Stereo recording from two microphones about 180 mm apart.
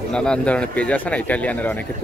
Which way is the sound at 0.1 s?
5° left (ahead or behind).